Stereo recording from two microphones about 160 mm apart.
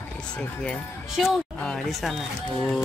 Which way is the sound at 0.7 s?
5° left (ahead or behind).